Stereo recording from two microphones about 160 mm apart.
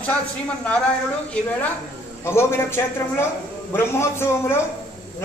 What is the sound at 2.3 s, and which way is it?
A man's voice, 15° left (ahead or behind).